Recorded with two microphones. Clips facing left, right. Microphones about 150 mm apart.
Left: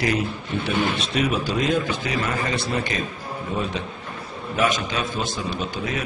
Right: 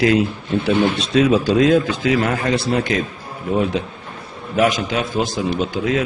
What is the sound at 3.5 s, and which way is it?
Speech, 80° right.